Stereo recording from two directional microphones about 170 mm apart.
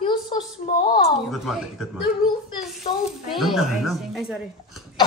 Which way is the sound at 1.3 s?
Centre (ahead or behind).